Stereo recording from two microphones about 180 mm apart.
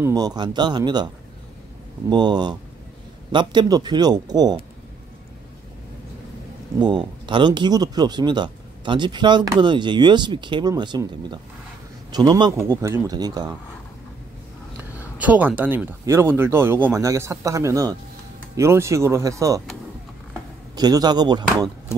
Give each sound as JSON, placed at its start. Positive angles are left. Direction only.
{"t": 0.0, "sound": "speech", "side_deg": -20}
{"t": 2.0, "sound": "speech", "side_deg": -25}
{"t": 6.8, "sound": "speech", "side_deg": -25}
{"t": 15.1, "sound": "speech", "side_deg": -10}
{"t": 20.7, "sound": "speech", "side_deg": -20}